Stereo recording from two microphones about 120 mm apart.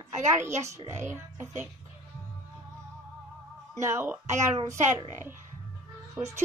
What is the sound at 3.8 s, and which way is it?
Speech, 20° right (ahead or behind).